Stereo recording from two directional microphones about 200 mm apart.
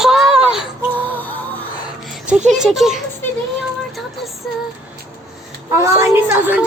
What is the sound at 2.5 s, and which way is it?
Speech, centre (ahead or behind).